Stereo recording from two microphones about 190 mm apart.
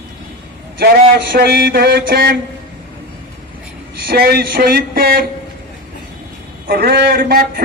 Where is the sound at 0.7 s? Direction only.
55° right (ahead or behind).